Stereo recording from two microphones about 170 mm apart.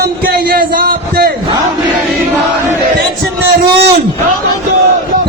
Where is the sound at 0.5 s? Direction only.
65° right (ahead or behind).